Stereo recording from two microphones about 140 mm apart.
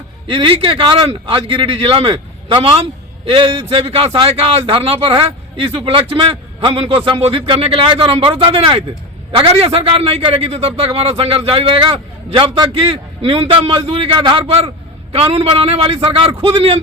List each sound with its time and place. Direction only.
0.3 s a man's voice: 40° right (ahead or behind)